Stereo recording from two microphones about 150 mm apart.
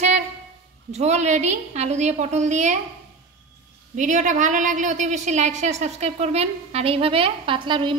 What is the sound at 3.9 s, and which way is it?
A woman's voice, 55° right (ahead or behind).